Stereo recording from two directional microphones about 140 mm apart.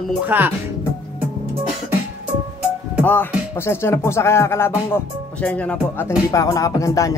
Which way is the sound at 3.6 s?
20° left (ahead or behind).